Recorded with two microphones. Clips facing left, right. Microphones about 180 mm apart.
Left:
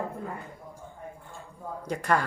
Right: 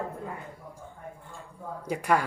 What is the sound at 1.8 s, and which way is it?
Speech, 10° right (ahead or behind).